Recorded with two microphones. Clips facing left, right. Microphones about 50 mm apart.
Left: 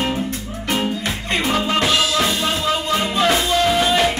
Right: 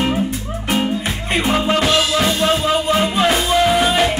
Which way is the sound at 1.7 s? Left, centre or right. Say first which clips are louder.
Right 2 dB; centre.